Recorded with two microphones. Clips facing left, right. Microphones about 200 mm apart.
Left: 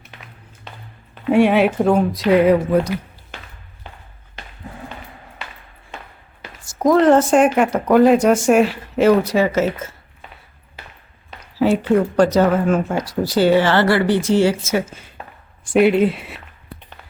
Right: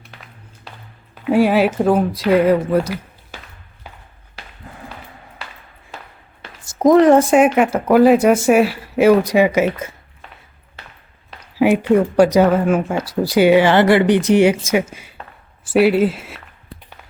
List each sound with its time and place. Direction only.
1.1 s speech: 5° right (ahead or behind)
6.4 s a sound: 20° right (ahead or behind)
7.0 s speech: 10° right (ahead or behind)
11.5 s speech: 15° right (ahead or behind)